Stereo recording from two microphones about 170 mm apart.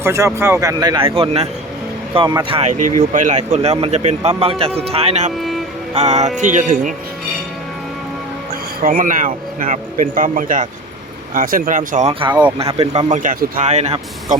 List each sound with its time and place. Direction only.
0.0 s a man's voice: 15° right (ahead or behind)
2.6 s speech: 45° right (ahead or behind)
5.4 s music: centre (ahead or behind)
5.9 s speech: 40° right (ahead or behind)
8.8 s speech: 55° right (ahead or behind)
12.7 s a man's voice: 30° right (ahead or behind)
13.1 s speech: 45° right (ahead or behind)